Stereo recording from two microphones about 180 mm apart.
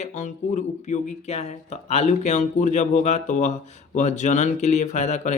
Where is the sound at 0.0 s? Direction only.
40° left (ahead or behind).